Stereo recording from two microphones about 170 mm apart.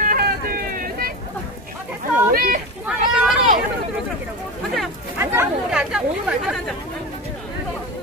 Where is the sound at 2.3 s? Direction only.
60° right (ahead or behind).